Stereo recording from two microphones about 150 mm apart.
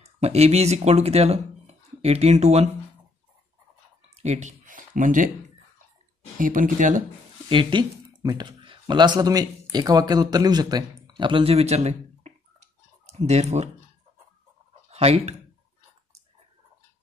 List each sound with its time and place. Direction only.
0.0 s speech: 45° right (ahead or behind)
4.2 s speech: 50° right (ahead or behind)
6.3 s speech: 65° right (ahead or behind)
7.4 s speech: 30° right (ahead or behind)
14.9 s speech: 45° right (ahead or behind)